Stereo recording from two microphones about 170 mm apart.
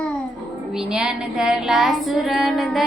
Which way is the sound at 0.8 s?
5° right (ahead or behind).